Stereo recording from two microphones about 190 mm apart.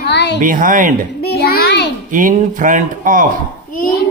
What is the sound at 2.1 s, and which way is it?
A man's voice, 45° right (ahead or behind).